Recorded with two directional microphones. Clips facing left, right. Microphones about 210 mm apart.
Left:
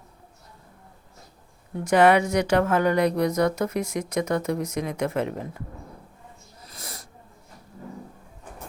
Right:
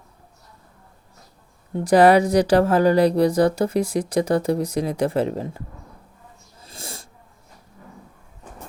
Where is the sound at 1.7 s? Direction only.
35° right (ahead or behind).